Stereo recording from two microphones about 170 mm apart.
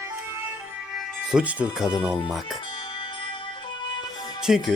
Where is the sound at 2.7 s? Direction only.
30° left (ahead or behind).